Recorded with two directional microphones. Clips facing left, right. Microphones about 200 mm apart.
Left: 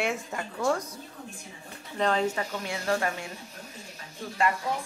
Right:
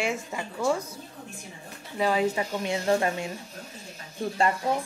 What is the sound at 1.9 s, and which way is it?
Speech, 10° right (ahead or behind).